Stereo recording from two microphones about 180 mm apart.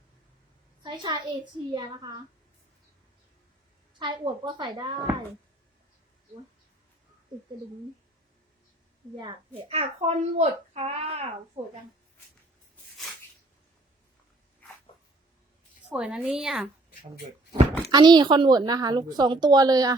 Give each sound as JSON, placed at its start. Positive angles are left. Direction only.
{"t": 0.8, "sound": "a woman's voice", "side_deg": -25}
{"t": 4.0, "sound": "a woman's voice", "side_deg": -25}
{"t": 9.1, "sound": "a woman's voice", "side_deg": -30}
{"t": 11.6, "sound": "a woman's voice", "side_deg": -20}
{"t": 15.9, "sound": "a woman's voice", "side_deg": -5}
{"t": 17.9, "sound": "a woman's voice", "side_deg": -25}